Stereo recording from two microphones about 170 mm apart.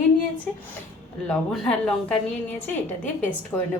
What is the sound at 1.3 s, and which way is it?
A woman's voice, 5° left (ahead or behind).